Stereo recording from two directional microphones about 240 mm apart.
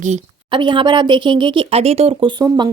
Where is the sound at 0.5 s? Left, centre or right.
Centre.